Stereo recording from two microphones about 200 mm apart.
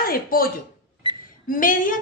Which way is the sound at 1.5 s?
45° left (ahead or behind).